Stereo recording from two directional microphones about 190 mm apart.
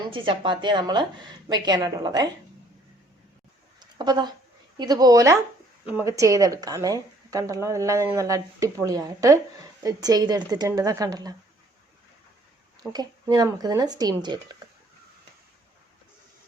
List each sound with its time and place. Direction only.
0.1 s a woman's voice: 25° right (ahead or behind)
3.8 s a sound: 25° right (ahead or behind)
4.8 s a woman's voice: 20° right (ahead or behind)
12.9 s a woman's voice: 20° right (ahead or behind)